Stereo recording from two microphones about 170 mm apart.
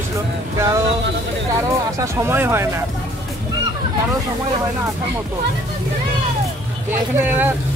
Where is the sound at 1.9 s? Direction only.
15° right (ahead or behind).